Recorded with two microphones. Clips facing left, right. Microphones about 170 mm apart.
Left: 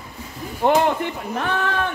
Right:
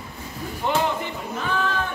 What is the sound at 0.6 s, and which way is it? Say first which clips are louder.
Speech: left 6 dB; 55° left (ahead or behind).